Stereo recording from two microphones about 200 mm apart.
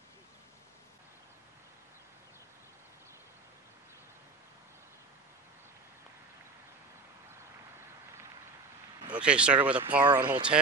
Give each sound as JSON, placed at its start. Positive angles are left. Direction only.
{"t": 9.1, "sound": "speech", "side_deg": -5}
{"t": 10.1, "sound": "speech", "side_deg": -20}